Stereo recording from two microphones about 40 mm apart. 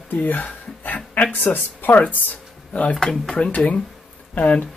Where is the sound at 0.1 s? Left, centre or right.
Left.